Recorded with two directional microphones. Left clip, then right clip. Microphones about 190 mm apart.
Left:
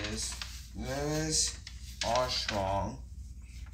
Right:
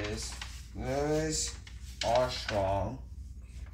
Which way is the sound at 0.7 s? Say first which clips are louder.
Right 4 dB; 15° right (ahead or behind).